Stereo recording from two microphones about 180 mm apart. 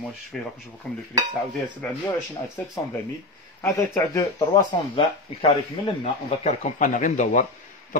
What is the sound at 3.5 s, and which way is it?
Speech, 15° left (ahead or behind).